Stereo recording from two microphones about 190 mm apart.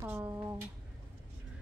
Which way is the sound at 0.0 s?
15° right (ahead or behind).